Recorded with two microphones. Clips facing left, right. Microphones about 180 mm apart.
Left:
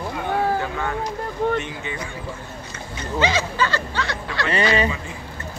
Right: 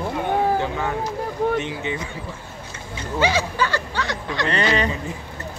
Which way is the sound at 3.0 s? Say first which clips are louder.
Right 1 dB; 10° right (ahead or behind).